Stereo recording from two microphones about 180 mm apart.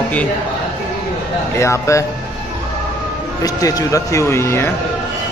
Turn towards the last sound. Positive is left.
turn(degrees=15)  # may be behind; listen again after turning